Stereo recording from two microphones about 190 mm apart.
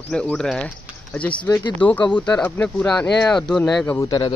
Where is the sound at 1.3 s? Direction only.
15° left (ahead or behind).